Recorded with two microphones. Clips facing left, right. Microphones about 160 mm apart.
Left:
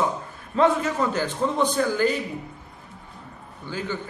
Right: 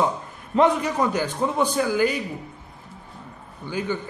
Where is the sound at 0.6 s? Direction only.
15° right (ahead or behind).